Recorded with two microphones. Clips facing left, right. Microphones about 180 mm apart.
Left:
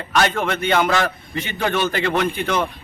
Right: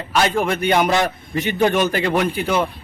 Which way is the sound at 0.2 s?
15° right (ahead or behind).